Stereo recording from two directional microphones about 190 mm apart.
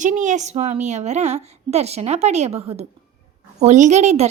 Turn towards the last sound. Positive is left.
turn(degrees=-35)  # may be behind; listen again after turning